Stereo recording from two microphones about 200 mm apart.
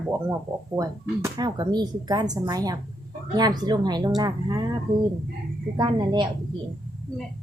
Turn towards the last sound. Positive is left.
turn(degrees=-20)  # may be behind; listen again after turning